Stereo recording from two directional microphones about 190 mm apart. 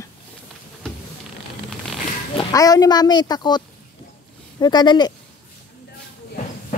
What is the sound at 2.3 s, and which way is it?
Speech, 20° left (ahead or behind).